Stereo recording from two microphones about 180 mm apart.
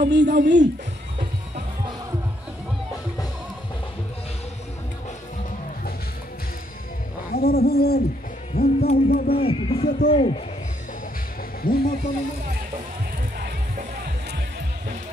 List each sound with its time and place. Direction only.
0.0 s speech: 65° right (ahead or behind)
7.3 s a sound: 60° left (ahead or behind)
9.3 s speech: 30° left (ahead or behind)
11.6 s speech: 55° left (ahead or behind)